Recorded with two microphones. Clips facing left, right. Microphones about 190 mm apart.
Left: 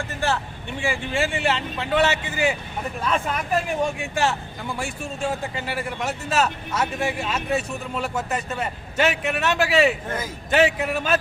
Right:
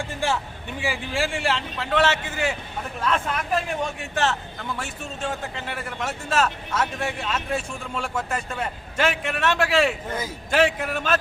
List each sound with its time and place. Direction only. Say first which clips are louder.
0.8 s a man's voice: left 2 dB; centre (ahead or behind)